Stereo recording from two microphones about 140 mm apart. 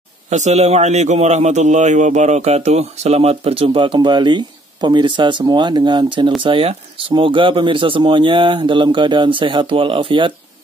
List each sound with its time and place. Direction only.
0.3 s a man's voice: 55° right (ahead or behind); by 10.3 s 35° right (ahead or behind)